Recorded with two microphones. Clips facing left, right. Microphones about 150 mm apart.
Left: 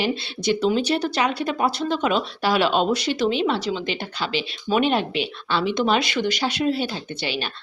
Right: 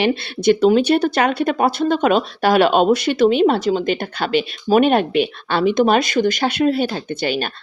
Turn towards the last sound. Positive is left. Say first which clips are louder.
# right 7 dB
turn(degrees=-50)  # may be behind; listen again after turning